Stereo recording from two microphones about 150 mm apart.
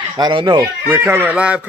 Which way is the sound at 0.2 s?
30° right (ahead or behind).